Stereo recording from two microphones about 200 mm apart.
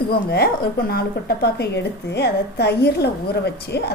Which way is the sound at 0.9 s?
55° left (ahead or behind).